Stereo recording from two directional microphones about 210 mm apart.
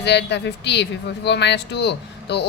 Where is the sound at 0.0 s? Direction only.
55° left (ahead or behind).